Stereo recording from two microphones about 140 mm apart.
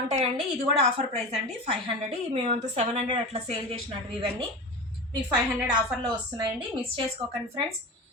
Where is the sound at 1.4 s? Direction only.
45° right (ahead or behind).